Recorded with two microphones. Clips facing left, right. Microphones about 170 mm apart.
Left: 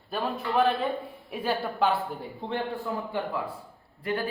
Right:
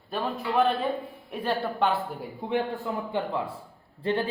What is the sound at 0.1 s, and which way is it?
Speech, centre (ahead or behind).